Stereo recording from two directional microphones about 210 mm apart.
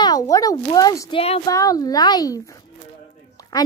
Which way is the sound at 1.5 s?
15° left (ahead or behind).